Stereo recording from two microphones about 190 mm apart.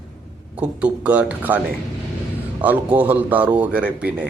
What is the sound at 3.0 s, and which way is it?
A man's voice, 10° right (ahead or behind).